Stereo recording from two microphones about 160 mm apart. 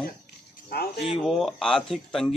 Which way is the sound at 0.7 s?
80° left.